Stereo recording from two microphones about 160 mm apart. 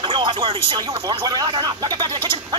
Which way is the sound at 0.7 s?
25° right (ahead or behind).